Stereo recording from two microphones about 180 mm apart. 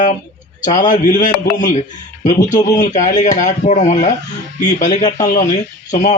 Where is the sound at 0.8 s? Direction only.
45° left (ahead or behind).